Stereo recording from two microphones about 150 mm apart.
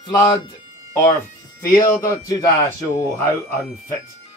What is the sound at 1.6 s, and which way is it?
Speech, 20° left (ahead or behind).